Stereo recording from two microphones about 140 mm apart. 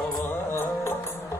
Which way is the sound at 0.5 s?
20° left (ahead or behind).